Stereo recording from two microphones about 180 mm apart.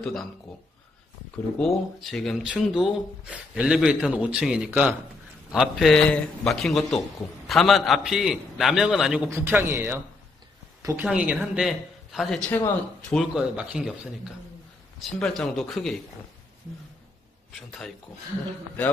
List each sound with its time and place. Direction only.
0.0 s speech: centre (ahead or behind)
1.6 s a man's voice: centre (ahead or behind)
10.8 s a sound: 15° right (ahead or behind)
11.1 s speech: 5° right (ahead or behind)
13.1 s speech: 5° right (ahead or behind)
15.0 s speech: 5° left (ahead or behind)
17.6 s speech: centre (ahead or behind)